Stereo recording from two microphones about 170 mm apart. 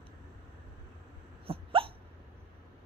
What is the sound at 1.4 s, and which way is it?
Hiccup, 35° right (ahead or behind).